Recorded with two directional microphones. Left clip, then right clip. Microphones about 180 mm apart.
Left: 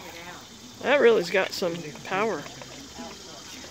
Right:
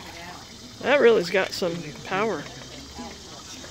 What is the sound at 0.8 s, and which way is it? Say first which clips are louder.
Speech: right 2 dB; 5° right (ahead or behind).